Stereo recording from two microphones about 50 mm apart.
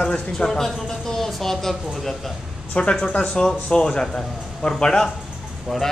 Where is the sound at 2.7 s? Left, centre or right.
Left; by 5.9 s centre.